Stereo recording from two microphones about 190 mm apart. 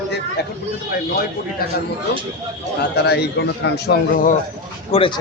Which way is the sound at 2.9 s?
60° left (ahead or behind).